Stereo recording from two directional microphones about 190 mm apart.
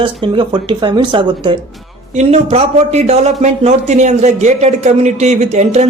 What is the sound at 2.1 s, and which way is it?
A man's voice, 35° right (ahead or behind).